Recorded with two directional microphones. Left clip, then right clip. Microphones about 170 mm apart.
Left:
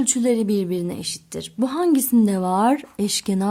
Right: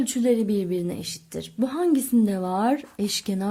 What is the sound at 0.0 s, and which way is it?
A woman's voice, 25° left (ahead or behind).